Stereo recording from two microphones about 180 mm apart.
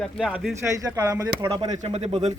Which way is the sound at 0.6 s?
20° right (ahead or behind).